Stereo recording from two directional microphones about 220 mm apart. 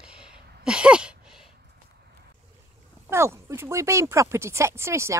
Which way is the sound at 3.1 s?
10° right (ahead or behind).